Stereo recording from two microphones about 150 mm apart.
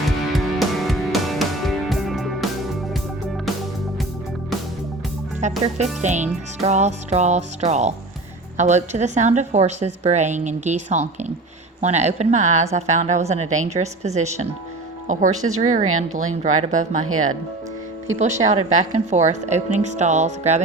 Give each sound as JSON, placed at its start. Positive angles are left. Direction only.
{"t": 0.0, "sound": "music", "side_deg": 0}
{"t": 5.4, "sound": "speech", "side_deg": -50}